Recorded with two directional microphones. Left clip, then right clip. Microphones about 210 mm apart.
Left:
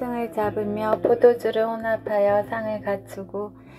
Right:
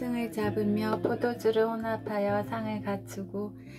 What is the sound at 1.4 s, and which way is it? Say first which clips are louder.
A woman's voice: left 4 dB; 5° right (ahead or behind).